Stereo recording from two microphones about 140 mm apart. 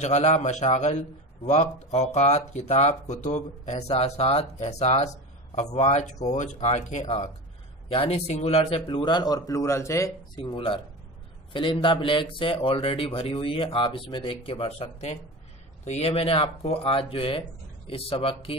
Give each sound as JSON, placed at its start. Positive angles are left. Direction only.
{"t": 0.0, "sound": "speech", "side_deg": 55}
{"t": 8.9, "sound": "speech", "side_deg": 35}
{"t": 10.4, "sound": "a man's voice", "side_deg": 40}